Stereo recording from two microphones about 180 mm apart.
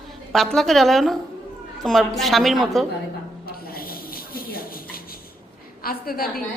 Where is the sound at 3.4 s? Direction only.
55° left (ahead or behind).